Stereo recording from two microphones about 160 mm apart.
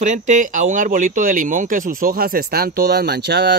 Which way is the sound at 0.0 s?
50° right (ahead or behind).